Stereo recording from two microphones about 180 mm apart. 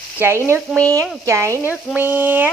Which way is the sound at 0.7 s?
5° left (ahead or behind).